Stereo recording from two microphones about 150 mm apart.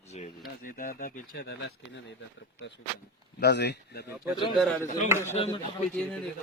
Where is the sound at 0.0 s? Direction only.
50° left (ahead or behind).